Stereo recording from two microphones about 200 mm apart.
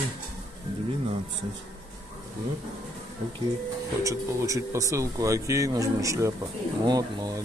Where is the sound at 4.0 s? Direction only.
15° right (ahead or behind).